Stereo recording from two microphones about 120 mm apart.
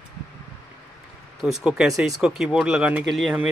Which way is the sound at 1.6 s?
5° right (ahead or behind).